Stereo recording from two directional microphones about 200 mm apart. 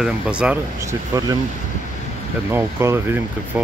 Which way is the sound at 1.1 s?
20° right (ahead or behind).